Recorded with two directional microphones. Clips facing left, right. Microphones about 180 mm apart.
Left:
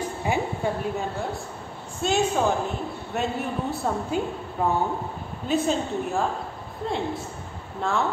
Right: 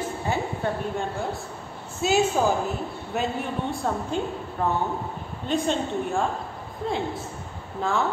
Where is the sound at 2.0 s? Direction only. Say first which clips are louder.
Right 1 dB; 5° right (ahead or behind).